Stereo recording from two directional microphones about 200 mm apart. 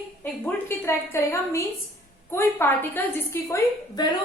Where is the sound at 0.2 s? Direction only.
10° left (ahead or behind).